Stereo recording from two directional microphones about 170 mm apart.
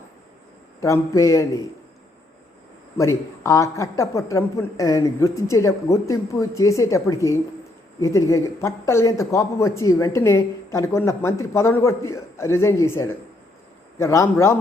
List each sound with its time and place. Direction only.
0.8 s a man's voice: 20° left (ahead or behind)
3.0 s a man's voice: 15° left (ahead or behind)